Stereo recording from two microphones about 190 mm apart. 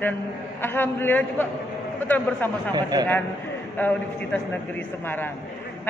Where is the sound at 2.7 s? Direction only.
20° right (ahead or behind).